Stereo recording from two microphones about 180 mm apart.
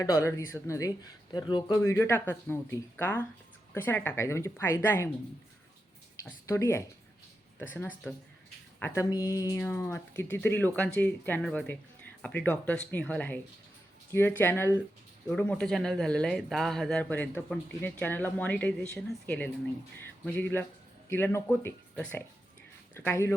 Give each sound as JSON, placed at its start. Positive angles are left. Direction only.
{"t": 0.0, "sound": "speech", "side_deg": 15}
{"t": 6.1, "sound": "speech", "side_deg": 15}
{"t": 20.0, "sound": "music", "side_deg": 10}
{"t": 21.1, "sound": "speech", "side_deg": 10}